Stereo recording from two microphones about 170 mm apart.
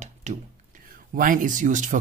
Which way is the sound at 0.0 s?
45° right (ahead or behind).